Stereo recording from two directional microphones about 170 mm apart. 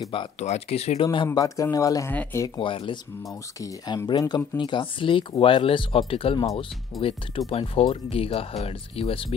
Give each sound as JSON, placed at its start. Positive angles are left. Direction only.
{"t": 0.0, "sound": "speech", "side_deg": 30}
{"t": 0.4, "sound": "speech", "side_deg": 40}
{"t": 1.0, "sound": "speech", "side_deg": 25}